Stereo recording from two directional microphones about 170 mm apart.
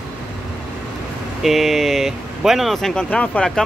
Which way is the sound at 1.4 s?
Centre (ahead or behind).